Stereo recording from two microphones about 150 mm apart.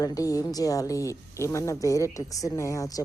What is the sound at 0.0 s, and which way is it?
A woman's voice, 25° left (ahead or behind).